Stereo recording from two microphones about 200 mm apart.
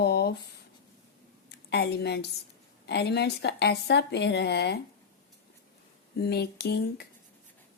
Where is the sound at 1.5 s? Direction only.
55° left (ahead or behind).